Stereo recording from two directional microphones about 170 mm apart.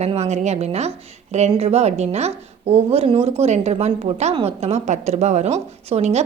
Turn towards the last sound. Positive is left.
turn(degrees=-40)  # may be behind; listen again after turning